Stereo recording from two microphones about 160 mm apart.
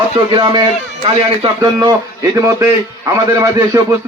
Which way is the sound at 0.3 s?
25° right (ahead or behind).